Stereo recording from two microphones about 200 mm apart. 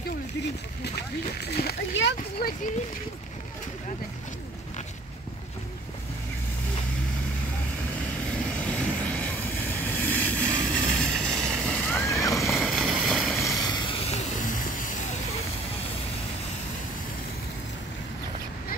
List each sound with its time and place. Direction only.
1.4 s a child's voice: 50° left (ahead or behind)
8.5 s vehicle: 5° left (ahead or behind)
12.4 s boat: centre (ahead or behind)
13.7 s a sound: 25° left (ahead or behind)